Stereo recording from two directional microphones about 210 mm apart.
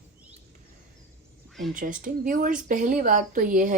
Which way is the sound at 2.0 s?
40° right (ahead or behind).